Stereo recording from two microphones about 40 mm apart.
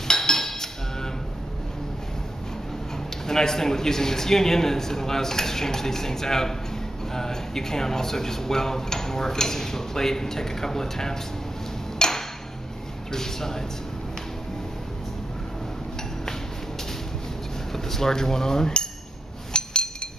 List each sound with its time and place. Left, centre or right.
0.1 s chink: centre
3.3 s speech: centre
12.0 s a sound: centre
13.1 s speech: centre
17.7 s speech: centre
19.5 s chink: left